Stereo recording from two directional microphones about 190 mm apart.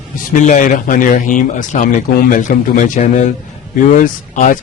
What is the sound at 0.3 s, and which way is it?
A man's voice, 40° left (ahead or behind).